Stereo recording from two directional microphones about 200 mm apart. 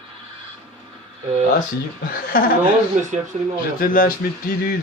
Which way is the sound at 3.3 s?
35° right (ahead or behind).